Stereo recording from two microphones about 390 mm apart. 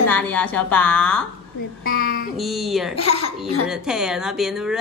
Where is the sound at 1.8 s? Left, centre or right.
Left.